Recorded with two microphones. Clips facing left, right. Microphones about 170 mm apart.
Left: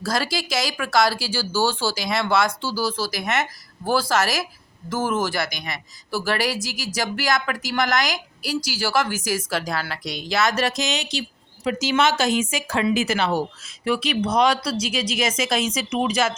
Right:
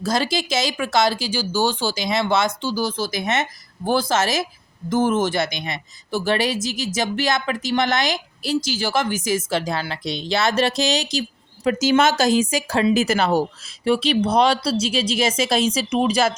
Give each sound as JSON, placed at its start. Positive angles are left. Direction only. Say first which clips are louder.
{"t": 0.0, "sound": "speech", "louder": "right 3 dB", "side_deg": -20}
{"t": 13.8, "sound": "speech", "louder": "right 4 dB", "side_deg": -30}